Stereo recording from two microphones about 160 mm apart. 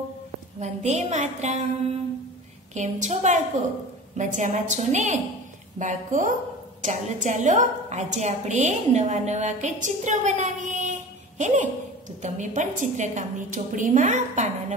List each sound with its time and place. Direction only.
0.6 s a woman's voice: 45° right (ahead or behind)
2.7 s a woman's voice: 45° right (ahead or behind)